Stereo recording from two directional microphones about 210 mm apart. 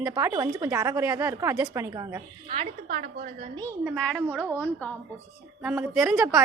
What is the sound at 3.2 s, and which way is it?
Speech, 40° right (ahead or behind).